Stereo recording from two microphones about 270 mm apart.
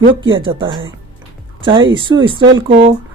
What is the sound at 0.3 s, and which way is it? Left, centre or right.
Speech, centre.